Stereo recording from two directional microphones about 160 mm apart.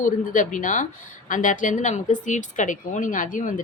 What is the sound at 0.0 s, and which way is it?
A woman's voice, 55° left (ahead or behind).